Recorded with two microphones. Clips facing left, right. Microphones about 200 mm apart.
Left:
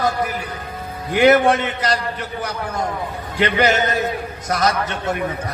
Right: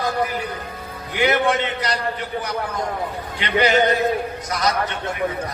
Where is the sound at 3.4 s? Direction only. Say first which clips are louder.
Left 2 dB; 45° left (ahead or behind).